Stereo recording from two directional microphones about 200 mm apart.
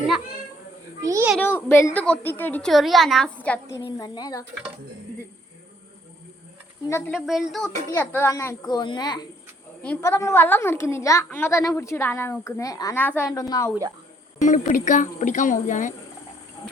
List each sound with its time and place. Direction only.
1.0 s a child's voice: 15° right (ahead or behind)
1.4 s a woman's voice: 10° left (ahead or behind)
7.1 s speech: centre (ahead or behind)
7.9 s a woman's voice: 10° left (ahead or behind)
9.8 s a woman's voice: 10° left (ahead or behind)
14.3 s speech: 40° left (ahead or behind)